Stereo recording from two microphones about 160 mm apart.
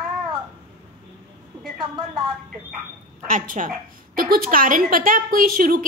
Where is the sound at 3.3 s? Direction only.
55° right (ahead or behind).